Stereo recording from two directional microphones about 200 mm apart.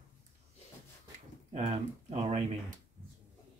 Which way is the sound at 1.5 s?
35° right (ahead or behind).